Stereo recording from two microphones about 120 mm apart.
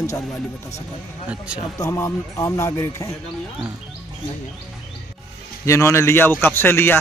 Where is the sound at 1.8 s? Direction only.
20° left (ahead or behind).